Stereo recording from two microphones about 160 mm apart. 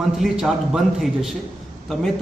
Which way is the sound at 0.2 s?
5° right (ahead or behind).